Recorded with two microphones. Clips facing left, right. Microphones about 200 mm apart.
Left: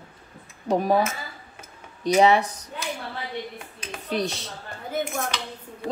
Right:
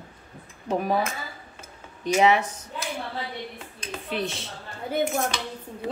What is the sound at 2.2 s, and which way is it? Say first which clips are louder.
Speech: left 2 dB; 35° left (ahead or behind).